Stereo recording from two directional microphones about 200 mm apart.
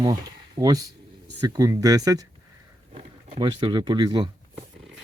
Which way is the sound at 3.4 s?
20° right (ahead or behind).